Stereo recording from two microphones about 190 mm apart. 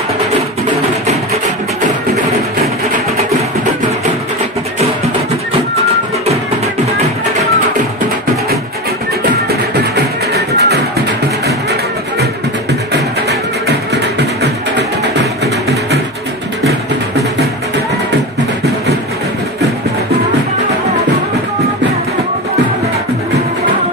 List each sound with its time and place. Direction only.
9.5 s music: 55° right (ahead or behind)